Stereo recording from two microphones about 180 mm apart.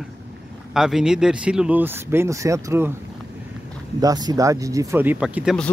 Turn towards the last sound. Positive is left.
turn(degrees=-5)  # may be behind; listen again after turning